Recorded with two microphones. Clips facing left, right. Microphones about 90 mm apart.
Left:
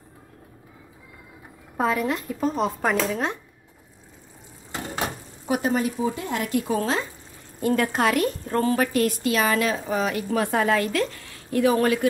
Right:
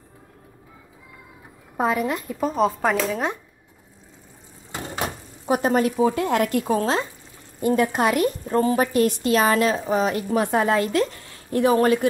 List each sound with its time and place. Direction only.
1.8 s speech: 10° right (ahead or behind)
5.5 s a woman's voice: 40° right (ahead or behind)
5.8 s speech: 75° right (ahead or behind)
6.5 s a woman's voice: 35° right (ahead or behind)
7.6 s a woman's voice: 20° right (ahead or behind); by 12.1 s 35° right (ahead or behind)